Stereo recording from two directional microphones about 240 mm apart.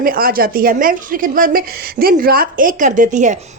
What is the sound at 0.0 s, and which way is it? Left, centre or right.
A woman's voice, right.